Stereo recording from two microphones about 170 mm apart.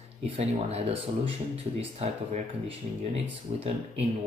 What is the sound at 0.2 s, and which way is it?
Speech, 40° right (ahead or behind).